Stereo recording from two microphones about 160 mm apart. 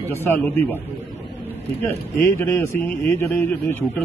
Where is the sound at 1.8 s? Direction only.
15° left (ahead or behind).